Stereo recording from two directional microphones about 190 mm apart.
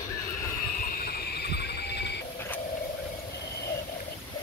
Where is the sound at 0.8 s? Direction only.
50° left (ahead or behind).